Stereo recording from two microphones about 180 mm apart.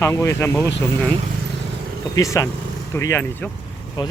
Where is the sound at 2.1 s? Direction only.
15° left (ahead or behind).